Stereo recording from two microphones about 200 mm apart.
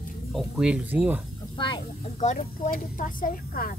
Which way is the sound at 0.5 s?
5° right (ahead or behind).